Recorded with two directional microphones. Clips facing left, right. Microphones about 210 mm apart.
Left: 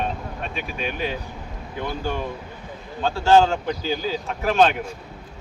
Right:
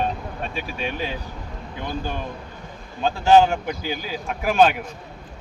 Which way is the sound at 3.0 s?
15° right (ahead or behind).